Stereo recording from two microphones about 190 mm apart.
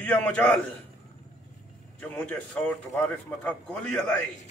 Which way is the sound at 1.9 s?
5° left (ahead or behind).